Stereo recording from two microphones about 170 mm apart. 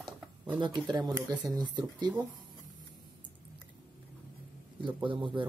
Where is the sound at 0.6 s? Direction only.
25° right (ahead or behind).